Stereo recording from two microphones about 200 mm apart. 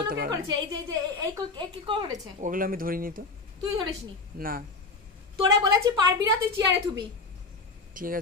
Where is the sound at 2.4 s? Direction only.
45° right (ahead or behind).